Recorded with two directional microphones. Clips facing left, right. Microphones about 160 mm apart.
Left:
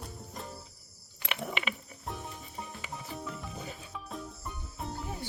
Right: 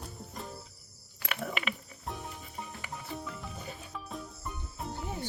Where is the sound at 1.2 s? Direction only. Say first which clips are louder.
Even; 25° left (ahead or behind).